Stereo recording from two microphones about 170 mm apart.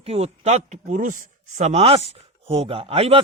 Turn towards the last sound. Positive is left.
turn(degrees=-35)  # may be behind; listen again after turning